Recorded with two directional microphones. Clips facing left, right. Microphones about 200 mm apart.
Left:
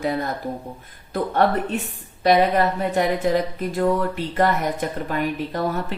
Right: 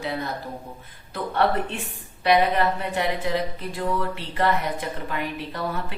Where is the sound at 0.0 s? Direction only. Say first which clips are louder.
Left 5 dB; 45° left (ahead or behind).